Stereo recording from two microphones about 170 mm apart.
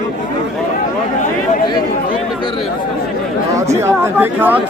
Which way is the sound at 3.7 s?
15° right (ahead or behind).